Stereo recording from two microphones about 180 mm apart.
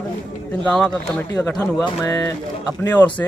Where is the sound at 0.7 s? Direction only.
5° left (ahead or behind).